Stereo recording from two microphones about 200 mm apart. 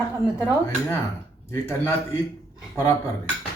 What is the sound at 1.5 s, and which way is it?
Speech, 10° left (ahead or behind).